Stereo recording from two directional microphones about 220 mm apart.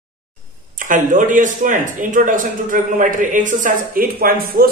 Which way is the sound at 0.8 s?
35° right (ahead or behind).